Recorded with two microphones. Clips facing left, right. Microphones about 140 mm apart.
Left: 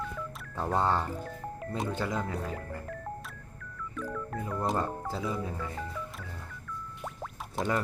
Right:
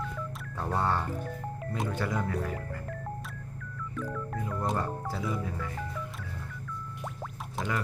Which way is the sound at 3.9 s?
Centre (ahead or behind).